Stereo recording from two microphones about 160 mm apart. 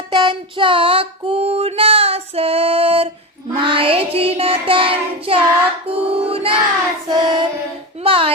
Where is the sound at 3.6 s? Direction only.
30° right (ahead or behind).